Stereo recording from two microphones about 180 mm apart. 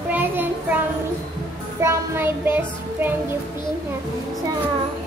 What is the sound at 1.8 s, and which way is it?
Child singing, 15° right (ahead or behind).